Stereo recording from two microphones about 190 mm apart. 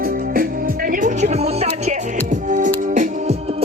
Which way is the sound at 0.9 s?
40° right (ahead or behind).